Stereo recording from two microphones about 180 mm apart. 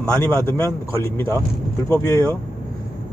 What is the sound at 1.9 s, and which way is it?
Speech, 15° left (ahead or behind).